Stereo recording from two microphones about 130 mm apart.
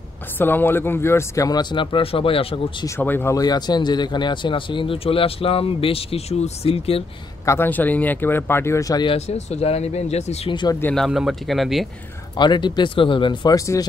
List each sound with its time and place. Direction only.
0.4 s a man's voice: 15° left (ahead or behind); by 2.9 s 40° left (ahead or behind)
3.0 s speech: 15° left (ahead or behind)
3.3 s speech: 30° left (ahead or behind); by 7.1 s 50° left (ahead or behind)
7.4 s speech: 15° left (ahead or behind)
9.0 s speech: 50° left (ahead or behind)
10.5 s a man's voice: 35° left (ahead or behind)
10.8 s speech: 10° left (ahead or behind)
11.1 s speech: centre (ahead or behind)
12.4 s a man's voice: 35° left (ahead or behind)